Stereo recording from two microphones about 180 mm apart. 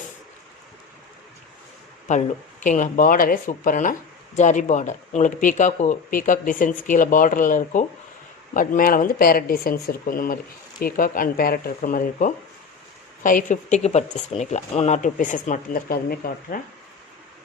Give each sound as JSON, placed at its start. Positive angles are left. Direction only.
{"t": 2.1, "sound": "speech", "side_deg": 40}